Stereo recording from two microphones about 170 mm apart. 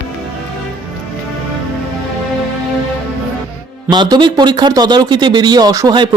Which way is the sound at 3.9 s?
25° right (ahead or behind).